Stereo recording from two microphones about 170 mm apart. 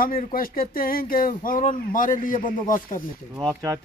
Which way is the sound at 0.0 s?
55° left (ahead or behind).